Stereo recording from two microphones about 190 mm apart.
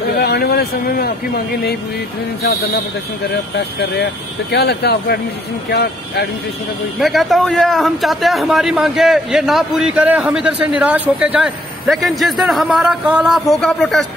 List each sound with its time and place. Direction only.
0.2 s a sound: 55° left (ahead or behind)
3.9 s speech: 60° left (ahead or behind)
7.0 s a man's voice: centre (ahead or behind)